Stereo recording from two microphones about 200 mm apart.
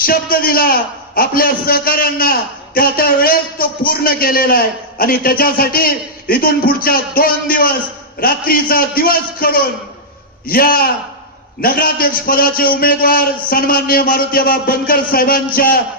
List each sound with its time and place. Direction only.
0.0 s a man's voice: 50° left (ahead or behind)